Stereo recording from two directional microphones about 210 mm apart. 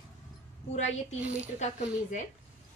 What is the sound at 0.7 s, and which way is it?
A woman's voice, 35° left (ahead or behind).